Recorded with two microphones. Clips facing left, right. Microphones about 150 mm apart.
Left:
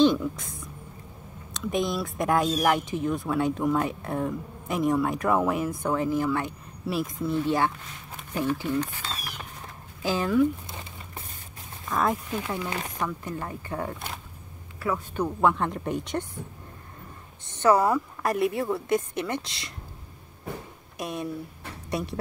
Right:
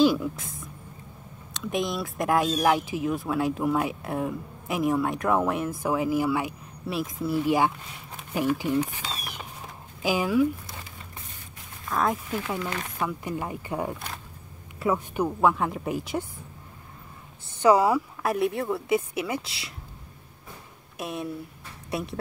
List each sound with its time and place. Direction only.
0.0 s speech: 5° right (ahead or behind)
8.2 s a sound: 10° right (ahead or behind)
11.9 s speech: centre (ahead or behind)
12.5 s speech: 25° left (ahead or behind)
13.0 s speech: 10° right (ahead or behind)
17.5 s speech: 10° right (ahead or behind)
21.0 s speech: centre (ahead or behind)